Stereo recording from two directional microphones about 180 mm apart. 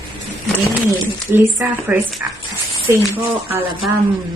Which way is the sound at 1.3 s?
10° right (ahead or behind).